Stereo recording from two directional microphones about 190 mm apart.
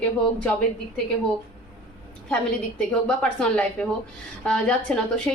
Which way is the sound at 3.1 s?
5° left (ahead or behind).